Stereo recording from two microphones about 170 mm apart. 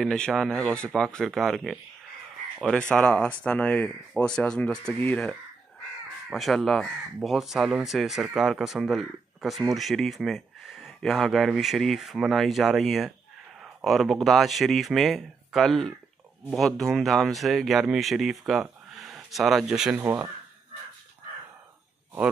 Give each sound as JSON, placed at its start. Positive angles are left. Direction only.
{"t": 0.0, "sound": "speech", "side_deg": 5}
{"t": 2.9, "sound": "speech", "side_deg": 5}
{"t": 6.3, "sound": "speech", "side_deg": 0}